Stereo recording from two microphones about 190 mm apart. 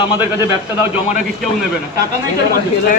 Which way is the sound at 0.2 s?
15° right (ahead or behind).